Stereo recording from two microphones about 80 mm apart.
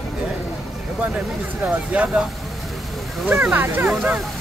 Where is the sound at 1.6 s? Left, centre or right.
Centre.